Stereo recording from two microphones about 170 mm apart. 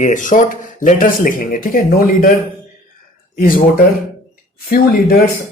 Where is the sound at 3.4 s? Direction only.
60° left (ahead or behind).